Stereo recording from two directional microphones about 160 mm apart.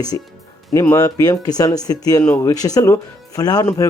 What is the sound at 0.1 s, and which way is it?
Speech, 20° left (ahead or behind).